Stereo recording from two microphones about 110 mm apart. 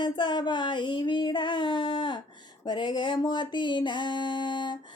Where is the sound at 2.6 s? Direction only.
45° left (ahead or behind).